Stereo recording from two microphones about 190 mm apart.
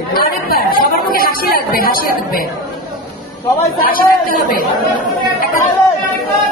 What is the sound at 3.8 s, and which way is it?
Speech, 50° left (ahead or behind).